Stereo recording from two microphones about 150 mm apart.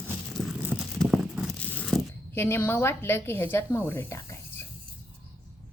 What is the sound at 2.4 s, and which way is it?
Speech, 15° left (ahead or behind).